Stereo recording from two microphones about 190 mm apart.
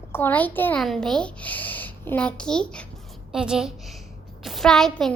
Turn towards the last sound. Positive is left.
turn(degrees=0)  # may be behind; listen again after turning